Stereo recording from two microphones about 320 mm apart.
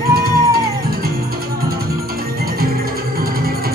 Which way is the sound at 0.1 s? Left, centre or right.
Right.